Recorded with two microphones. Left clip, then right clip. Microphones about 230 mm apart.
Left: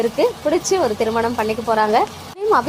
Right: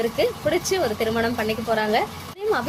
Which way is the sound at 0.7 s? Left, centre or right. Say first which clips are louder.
Left 5 dB; centre.